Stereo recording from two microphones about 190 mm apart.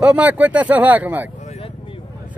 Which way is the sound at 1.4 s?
30° left (ahead or behind).